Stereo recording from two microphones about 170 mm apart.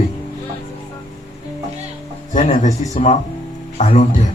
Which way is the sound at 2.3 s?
50° left (ahead or behind).